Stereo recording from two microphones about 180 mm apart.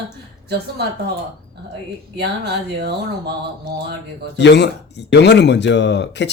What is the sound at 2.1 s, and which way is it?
Speech, 65° right (ahead or behind).